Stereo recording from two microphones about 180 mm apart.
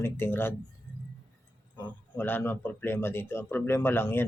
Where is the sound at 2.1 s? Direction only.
10° left (ahead or behind).